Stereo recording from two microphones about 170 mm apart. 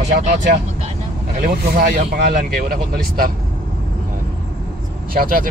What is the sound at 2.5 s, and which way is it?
Speech, 60° right (ahead or behind).